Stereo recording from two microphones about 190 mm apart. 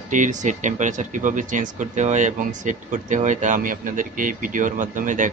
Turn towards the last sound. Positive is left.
turn(degrees=-40)  # may be behind; listen again after turning